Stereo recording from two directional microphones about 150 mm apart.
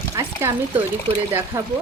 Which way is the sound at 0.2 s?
20° right (ahead or behind).